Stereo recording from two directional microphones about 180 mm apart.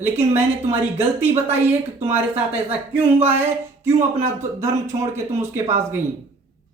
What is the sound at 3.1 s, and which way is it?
Speech, 35° right (ahead or behind).